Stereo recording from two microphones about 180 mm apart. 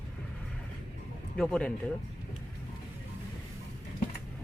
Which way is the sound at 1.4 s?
5° left (ahead or behind).